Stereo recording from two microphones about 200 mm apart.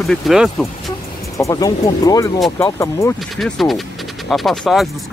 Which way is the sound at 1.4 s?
15° left (ahead or behind).